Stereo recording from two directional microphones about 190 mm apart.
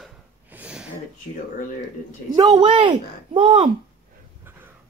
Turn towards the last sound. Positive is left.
turn(degrees=-25)  # may be behind; listen again after turning